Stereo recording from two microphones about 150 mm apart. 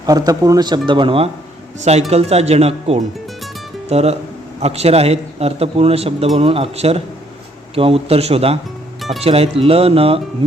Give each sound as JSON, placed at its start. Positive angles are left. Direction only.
{"t": 0.0, "sound": "speech", "side_deg": -25}
{"t": 1.8, "sound": "a man's voice", "side_deg": -45}
{"t": 9.0, "sound": "music", "side_deg": 0}
{"t": 9.2, "sound": "speech", "side_deg": -45}